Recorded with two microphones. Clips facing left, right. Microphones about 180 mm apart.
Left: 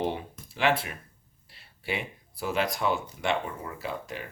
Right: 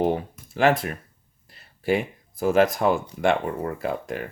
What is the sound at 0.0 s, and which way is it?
Speech, 45° right (ahead or behind).